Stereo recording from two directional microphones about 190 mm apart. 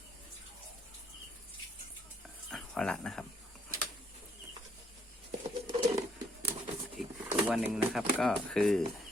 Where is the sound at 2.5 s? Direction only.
5° left (ahead or behind).